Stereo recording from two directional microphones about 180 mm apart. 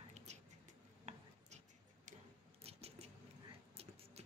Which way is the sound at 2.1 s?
45° right (ahead or behind).